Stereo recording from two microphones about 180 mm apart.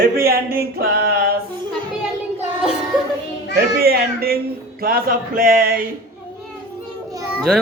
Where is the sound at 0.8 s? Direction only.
60° right (ahead or behind).